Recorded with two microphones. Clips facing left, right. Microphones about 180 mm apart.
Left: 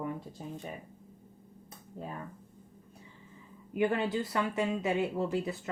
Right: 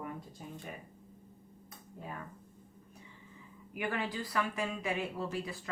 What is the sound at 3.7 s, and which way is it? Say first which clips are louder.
Speech: left 7 dB; 25° left (ahead or behind).